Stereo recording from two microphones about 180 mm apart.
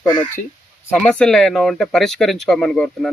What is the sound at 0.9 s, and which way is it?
A man's voice, 5° left (ahead or behind).